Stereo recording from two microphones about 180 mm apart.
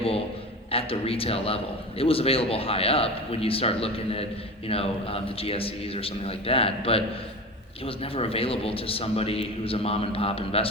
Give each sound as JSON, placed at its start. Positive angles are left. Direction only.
{"t": 0.7, "sound": "a man's voice", "side_deg": 30}